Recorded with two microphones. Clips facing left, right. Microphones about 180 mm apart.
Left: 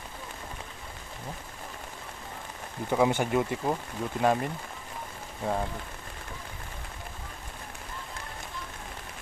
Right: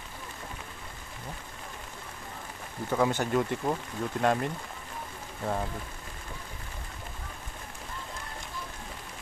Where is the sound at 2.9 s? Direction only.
15° left (ahead or behind).